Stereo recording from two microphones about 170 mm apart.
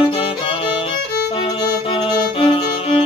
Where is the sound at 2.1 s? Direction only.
35° left (ahead or behind).